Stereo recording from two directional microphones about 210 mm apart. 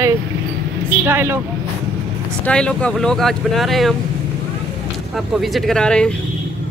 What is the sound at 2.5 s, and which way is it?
Speech, 5° left (ahead or behind).